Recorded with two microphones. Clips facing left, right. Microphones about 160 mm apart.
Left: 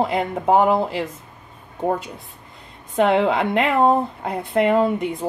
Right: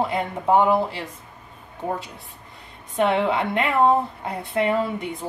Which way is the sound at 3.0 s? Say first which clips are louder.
Left 3 dB; 90° left.